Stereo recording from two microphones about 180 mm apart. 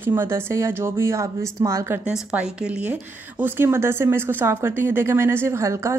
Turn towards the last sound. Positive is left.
turn(degrees=-15)  # may be behind; listen again after turning